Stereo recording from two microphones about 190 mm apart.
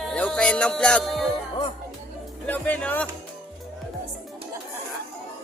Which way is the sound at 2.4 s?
10° left (ahead or behind).